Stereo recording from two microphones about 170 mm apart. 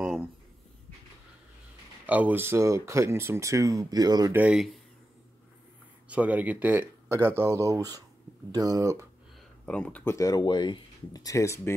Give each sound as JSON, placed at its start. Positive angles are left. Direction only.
{"t": 0.0, "sound": "a sound", "side_deg": 0}
{"t": 2.0, "sound": "speech", "side_deg": -10}
{"t": 4.4, "sound": "speech", "side_deg": -5}
{"t": 6.0, "sound": "speech", "side_deg": -10}
{"t": 9.7, "sound": "speech", "side_deg": 5}
{"t": 10.1, "sound": "speech", "side_deg": 20}